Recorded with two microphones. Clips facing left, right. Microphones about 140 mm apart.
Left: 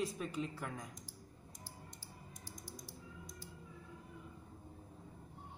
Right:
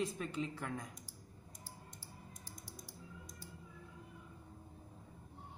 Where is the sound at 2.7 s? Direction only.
60° right (ahead or behind).